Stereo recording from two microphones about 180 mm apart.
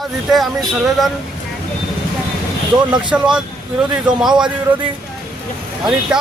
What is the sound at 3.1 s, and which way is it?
Speech, 5° right (ahead or behind).